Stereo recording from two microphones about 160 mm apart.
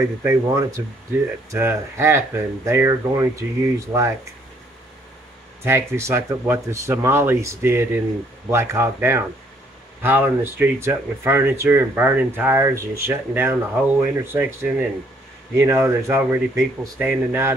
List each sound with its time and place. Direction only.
0.2 s speech: 15° right (ahead or behind)
5.6 s speech: 15° right (ahead or behind)